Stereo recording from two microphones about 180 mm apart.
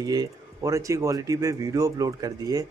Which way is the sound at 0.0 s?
20° right (ahead or behind).